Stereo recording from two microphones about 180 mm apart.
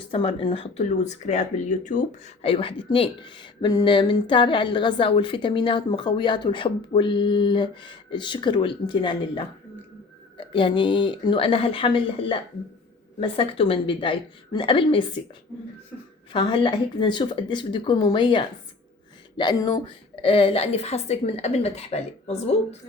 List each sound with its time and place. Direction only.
0.1 s speech: 30° left (ahead or behind)
16.3 s a woman's voice: 25° left (ahead or behind)